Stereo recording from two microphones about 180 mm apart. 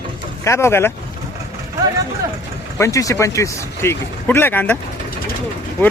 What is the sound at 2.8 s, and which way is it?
Speech, 20° left (ahead or behind).